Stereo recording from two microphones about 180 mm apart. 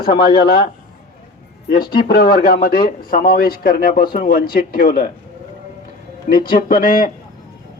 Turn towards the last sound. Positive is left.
turn(degrees=55)  # may be behind; listen again after turning